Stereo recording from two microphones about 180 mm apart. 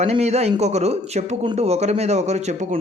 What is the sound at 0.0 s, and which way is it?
Speech, 35° right (ahead or behind).